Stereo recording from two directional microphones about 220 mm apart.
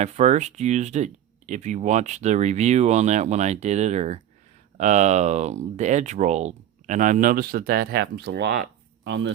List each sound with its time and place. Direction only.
0.0 s speech: 30° right (ahead or behind); by 9.3 s 55° right (ahead or behind)